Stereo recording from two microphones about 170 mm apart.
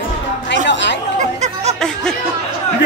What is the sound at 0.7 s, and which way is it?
Chatter, 90° left.